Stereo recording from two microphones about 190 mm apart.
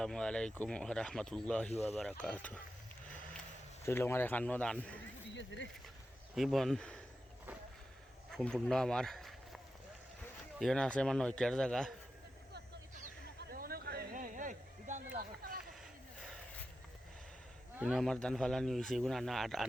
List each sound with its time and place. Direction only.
0.0 s speech: 5° left (ahead or behind)
3.8 s speech: 10° left (ahead or behind)
5.3 s speech: 75° left (ahead or behind)
6.3 s speech: centre (ahead or behind)
8.3 s speech: centre (ahead or behind)
10.6 s speech: 5° left (ahead or behind)
13.5 s a sound: 50° right (ahead or behind)
17.7 s speech: centre (ahead or behind)